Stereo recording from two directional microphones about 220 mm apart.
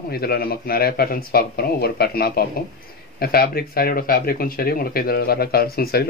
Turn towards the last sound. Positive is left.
turn(degrees=45)  # may be behind; listen again after turning